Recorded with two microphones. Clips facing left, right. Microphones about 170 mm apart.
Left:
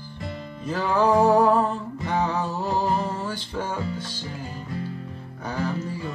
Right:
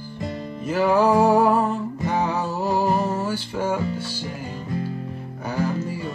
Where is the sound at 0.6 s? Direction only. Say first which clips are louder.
Right 4 dB; 10° right (ahead or behind).